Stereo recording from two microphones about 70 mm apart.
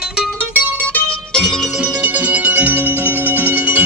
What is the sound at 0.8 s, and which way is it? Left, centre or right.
Music, centre.